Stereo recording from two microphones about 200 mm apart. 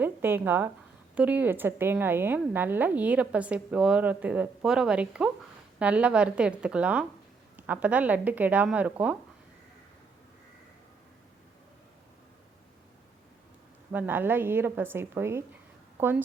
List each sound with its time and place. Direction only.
0.0 s a woman's voice: 10° right (ahead or behind)
13.9 s a woman's voice: 10° right (ahead or behind)